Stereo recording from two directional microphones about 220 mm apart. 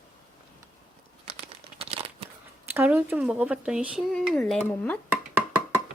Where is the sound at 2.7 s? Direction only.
10° right (ahead or behind).